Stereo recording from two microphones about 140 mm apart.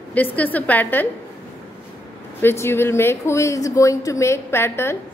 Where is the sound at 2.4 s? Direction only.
20° left (ahead or behind).